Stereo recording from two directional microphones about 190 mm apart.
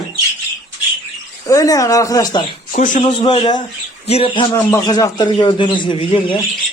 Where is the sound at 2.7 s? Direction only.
45° left (ahead or behind).